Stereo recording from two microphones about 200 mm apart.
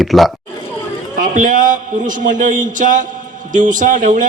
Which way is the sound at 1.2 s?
40° right (ahead or behind).